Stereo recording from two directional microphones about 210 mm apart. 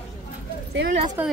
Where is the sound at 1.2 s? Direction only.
10° right (ahead or behind).